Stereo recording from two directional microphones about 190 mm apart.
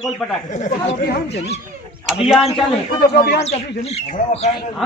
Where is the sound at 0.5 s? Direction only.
40° left (ahead or behind).